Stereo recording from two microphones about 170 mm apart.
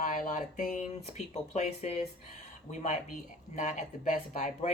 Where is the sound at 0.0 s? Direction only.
50° left (ahead or behind).